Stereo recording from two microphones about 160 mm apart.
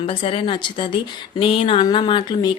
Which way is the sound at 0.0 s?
35° left (ahead or behind).